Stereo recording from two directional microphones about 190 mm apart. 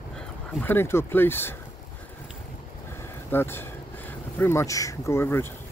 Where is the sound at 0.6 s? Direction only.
10° left (ahead or behind).